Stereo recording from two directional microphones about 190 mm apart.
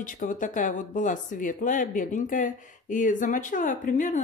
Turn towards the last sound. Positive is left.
turn(degrees=40)  # may be behind; listen again after turning